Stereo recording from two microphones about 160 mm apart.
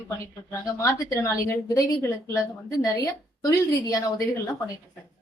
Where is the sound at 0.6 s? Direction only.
20° left (ahead or behind).